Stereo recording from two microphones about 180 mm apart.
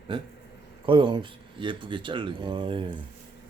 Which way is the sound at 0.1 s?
25° right (ahead or behind).